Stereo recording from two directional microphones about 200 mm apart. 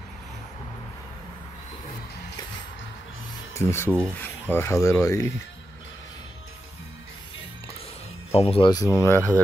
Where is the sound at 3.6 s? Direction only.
10° left (ahead or behind).